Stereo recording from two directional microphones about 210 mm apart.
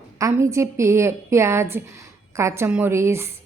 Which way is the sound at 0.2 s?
15° right (ahead or behind).